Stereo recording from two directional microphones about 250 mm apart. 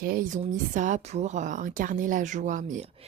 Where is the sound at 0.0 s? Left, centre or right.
Right.